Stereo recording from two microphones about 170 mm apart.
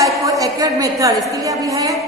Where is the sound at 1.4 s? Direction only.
20° right (ahead or behind).